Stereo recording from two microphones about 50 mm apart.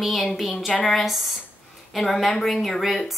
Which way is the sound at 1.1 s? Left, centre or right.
Centre.